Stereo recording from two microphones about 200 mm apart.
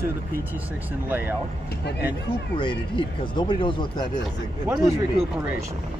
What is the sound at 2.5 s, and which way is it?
Speech, 25° left (ahead or behind).